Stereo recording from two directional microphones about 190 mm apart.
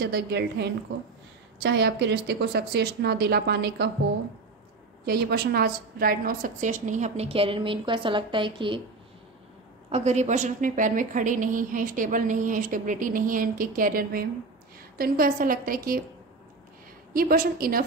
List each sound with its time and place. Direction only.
0.0 s a woman's voice: 60° right (ahead or behind)
5.0 s a woman's voice: 55° right (ahead or behind); by 8.8 s 25° right (ahead or behind)
9.8 s a woman's voice: 35° right (ahead or behind)
17.1 s a woman's voice: 50° right (ahead or behind)